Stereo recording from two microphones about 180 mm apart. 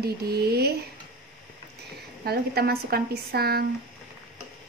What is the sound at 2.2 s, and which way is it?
Speech, 60° right (ahead or behind).